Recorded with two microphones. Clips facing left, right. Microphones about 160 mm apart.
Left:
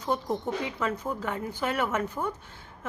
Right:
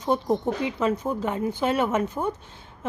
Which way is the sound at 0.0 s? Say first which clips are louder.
Right 6 dB; 20° right (ahead or behind).